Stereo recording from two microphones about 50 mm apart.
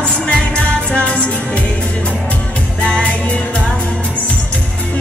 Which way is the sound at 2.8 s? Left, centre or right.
Left.